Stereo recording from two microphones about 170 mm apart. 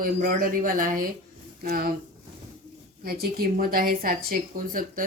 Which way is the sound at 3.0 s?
65° right (ahead or behind).